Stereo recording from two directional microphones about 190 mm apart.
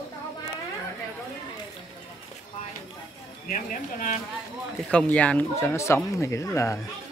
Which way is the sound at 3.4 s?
45° left (ahead or behind).